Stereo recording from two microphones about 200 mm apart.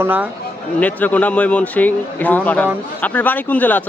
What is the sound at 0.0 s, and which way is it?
Speech, 10° right (ahead or behind).